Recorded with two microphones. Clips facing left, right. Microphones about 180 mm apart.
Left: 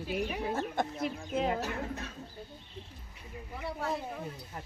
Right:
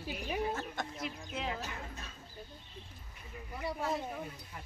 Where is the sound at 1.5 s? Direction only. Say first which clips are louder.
Left 8 dB; 65° left (ahead or behind).